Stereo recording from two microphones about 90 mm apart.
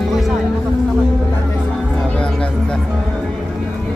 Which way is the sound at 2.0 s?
10° left (ahead or behind).